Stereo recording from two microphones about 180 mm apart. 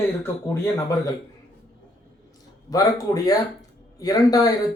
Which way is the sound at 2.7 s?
20° left (ahead or behind).